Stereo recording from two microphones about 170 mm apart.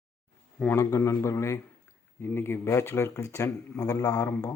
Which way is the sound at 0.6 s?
15° left (ahead or behind).